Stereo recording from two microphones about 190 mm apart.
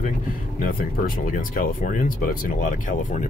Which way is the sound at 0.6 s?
45° left (ahead or behind).